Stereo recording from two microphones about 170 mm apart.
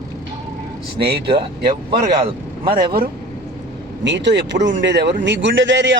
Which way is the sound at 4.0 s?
90° right.